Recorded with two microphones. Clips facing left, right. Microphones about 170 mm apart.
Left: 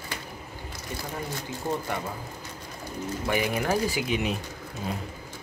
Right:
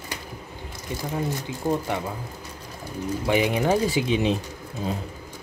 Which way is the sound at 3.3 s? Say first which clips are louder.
Right 5 dB; 20° right (ahead or behind).